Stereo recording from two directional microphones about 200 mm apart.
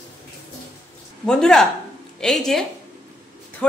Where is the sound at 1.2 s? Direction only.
5° left (ahead or behind).